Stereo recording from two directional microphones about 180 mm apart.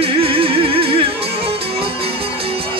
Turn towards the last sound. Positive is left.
turn(degrees=-30)  # may be behind; listen again after turning